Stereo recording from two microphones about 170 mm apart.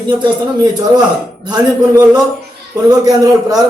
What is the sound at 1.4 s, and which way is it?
Speech, 25° right (ahead or behind).